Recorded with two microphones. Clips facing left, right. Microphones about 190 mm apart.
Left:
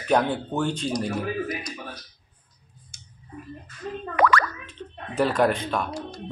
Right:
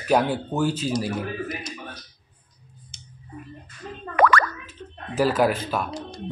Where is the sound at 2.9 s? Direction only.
20° right (ahead or behind).